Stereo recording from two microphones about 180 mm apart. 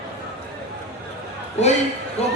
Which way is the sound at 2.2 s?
35° left (ahead or behind).